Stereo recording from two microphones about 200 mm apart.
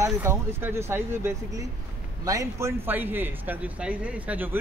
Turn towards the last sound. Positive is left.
turn(degrees=-10)  # may be behind; listen again after turning